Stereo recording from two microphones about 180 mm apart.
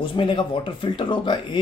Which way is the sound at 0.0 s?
25° left (ahead or behind).